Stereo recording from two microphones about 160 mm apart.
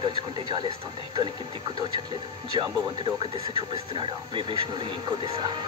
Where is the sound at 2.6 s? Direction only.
30° right (ahead or behind).